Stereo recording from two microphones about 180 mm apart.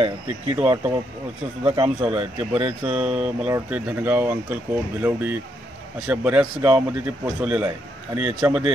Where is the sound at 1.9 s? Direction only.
35° right (ahead or behind).